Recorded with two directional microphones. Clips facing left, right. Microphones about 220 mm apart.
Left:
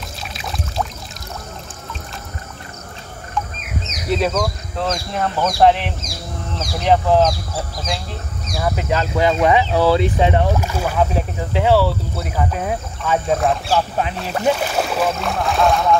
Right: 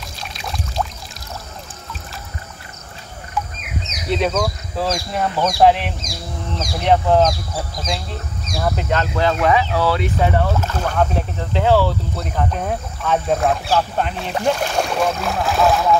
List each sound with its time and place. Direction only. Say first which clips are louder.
0.2 s pour: even; centre (ahead or behind)
4.1 s speech: even; centre (ahead or behind)